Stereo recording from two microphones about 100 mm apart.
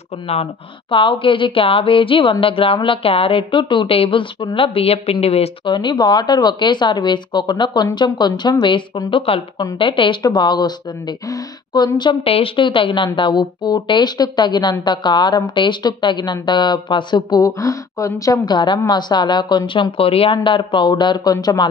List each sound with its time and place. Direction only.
0.3 s speech: 85° left
0.9 s a woman's voice: 55° left (ahead or behind)
4.6 s speech: 70° left (ahead or behind); by 5.5 s 90° left
5.7 s speech: 50° left (ahead or behind)
9.1 s speech: 65° left (ahead or behind)
9.8 s speech: 55° left (ahead or behind)
12.3 s speech: 65° left (ahead or behind); by 17.4 s 50° left (ahead or behind)
17.4 s a woman's voice: 35° left (ahead or behind)